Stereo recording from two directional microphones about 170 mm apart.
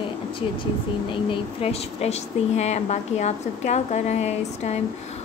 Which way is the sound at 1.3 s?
35° left (ahead or behind).